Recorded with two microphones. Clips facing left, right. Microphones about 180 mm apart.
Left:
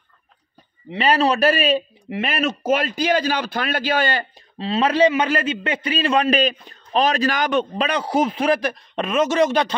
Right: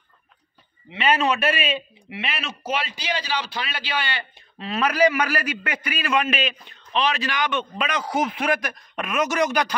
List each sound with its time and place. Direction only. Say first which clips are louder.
0.8 s a man's voice: left 3 dB; 35° left (ahead or behind)
4.6 s a man's voice: left 4 dB; 30° left (ahead or behind)